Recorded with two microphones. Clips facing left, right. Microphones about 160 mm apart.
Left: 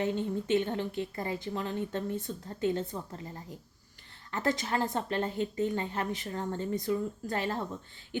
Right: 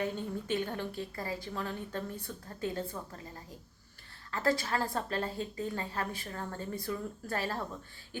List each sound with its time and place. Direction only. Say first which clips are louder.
0.0 s a woman's voice: left 4 dB; 25° left (ahead or behind)
4.3 s a woman's voice: even; 20° left (ahead or behind)